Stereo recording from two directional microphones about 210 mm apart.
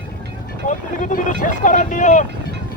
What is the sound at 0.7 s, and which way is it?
Speech, 35° left (ahead or behind).